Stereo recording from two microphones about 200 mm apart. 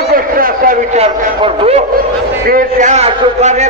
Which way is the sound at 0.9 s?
30° right (ahead or behind).